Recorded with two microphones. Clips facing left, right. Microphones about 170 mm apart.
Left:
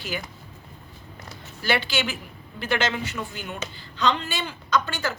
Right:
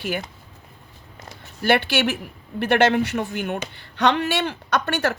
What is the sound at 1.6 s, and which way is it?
A woman's voice, 60° right (ahead or behind).